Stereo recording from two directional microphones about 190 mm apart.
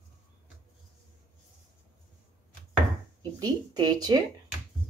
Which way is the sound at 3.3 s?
20° right (ahead or behind).